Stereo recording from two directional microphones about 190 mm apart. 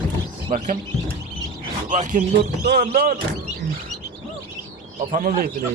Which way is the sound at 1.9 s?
45° right (ahead or behind).